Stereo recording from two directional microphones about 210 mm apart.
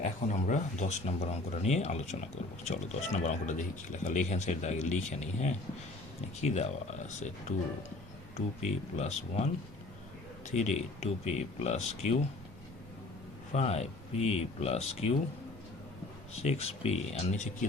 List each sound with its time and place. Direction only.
0.0 s speech: 35° left (ahead or behind)
8.4 s speech: 30° left (ahead or behind)
13.5 s speech: 30° left (ahead or behind)
16.4 s speech: 30° left (ahead or behind)